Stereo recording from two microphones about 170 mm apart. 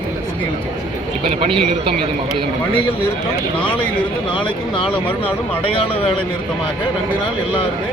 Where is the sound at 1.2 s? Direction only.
30° right (ahead or behind).